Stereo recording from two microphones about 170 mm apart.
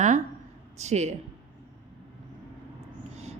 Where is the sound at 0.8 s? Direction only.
40° right (ahead or behind).